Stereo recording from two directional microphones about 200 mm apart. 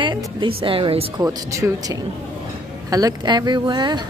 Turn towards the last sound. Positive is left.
turn(degrees=-20)  # may be behind; listen again after turning